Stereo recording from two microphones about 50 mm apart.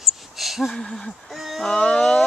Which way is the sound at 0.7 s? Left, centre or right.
Centre.